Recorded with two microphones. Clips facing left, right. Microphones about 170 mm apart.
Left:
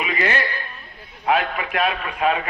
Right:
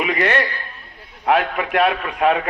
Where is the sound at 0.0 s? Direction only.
50° right (ahead or behind).